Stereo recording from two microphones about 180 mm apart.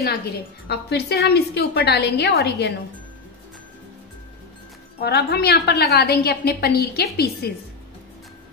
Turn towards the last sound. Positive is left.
turn(degrees=60)  # may be behind; listen again after turning